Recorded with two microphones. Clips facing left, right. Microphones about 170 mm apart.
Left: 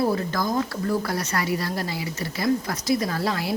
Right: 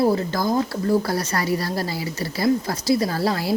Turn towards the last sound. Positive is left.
turn(degrees=-35)  # may be behind; listen again after turning